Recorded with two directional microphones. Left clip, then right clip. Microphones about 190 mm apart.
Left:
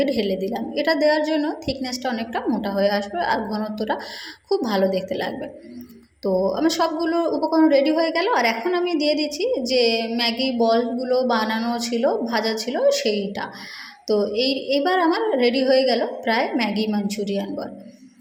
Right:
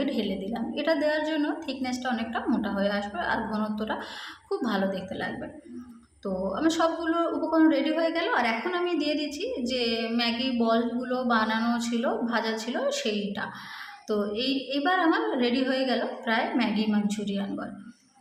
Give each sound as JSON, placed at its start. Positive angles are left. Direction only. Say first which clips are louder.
{"t": 0.0, "sound": "a woman's voice", "louder": "left 8 dB", "side_deg": 25}